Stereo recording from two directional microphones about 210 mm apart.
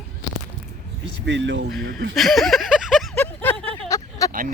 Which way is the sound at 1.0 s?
60° right (ahead or behind).